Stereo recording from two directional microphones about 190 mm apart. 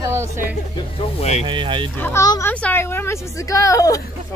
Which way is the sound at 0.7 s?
35° left (ahead or behind).